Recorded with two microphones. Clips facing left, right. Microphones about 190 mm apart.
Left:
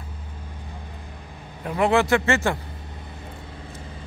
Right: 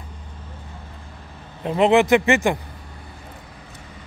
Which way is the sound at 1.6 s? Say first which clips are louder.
Right 4 dB; 20° right (ahead or behind).